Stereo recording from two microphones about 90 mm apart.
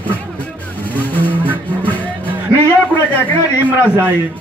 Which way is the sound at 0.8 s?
20° left (ahead or behind).